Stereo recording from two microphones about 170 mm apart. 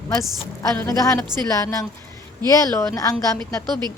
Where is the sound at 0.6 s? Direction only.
20° left (ahead or behind).